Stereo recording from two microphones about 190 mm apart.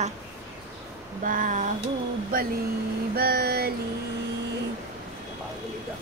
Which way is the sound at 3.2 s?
55° right (ahead or behind).